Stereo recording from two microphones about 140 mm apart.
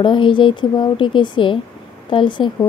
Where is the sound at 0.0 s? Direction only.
35° left (ahead or behind).